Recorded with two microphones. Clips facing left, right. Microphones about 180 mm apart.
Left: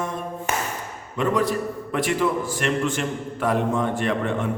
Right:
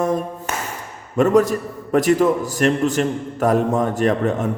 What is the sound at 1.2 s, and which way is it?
A man's voice, 45° right (ahead or behind).